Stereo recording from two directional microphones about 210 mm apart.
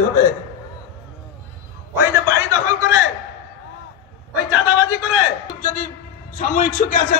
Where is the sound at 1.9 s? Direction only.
15° right (ahead or behind).